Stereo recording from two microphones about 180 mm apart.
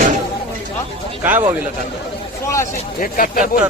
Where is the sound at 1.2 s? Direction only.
10° right (ahead or behind).